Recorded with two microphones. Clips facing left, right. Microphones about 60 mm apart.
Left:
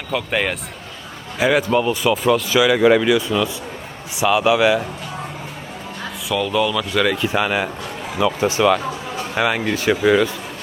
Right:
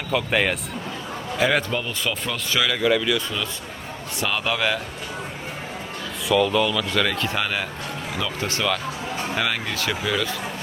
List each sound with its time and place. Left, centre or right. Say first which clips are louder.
0.1 s a man's voice: left 1 dB; centre
6.2 s a man's voice: even; centre; by 10.2 s left